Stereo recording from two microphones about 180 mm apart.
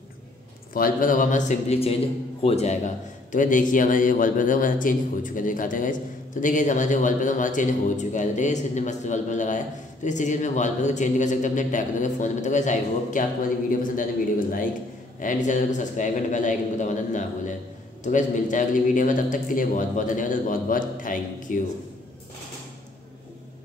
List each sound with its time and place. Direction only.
0.7 s a man's voice: 50° left (ahead or behind)
15.1 s a man's voice: 45° left (ahead or behind)